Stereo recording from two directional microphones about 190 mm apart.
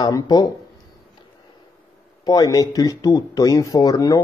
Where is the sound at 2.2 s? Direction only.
20° left (ahead or behind).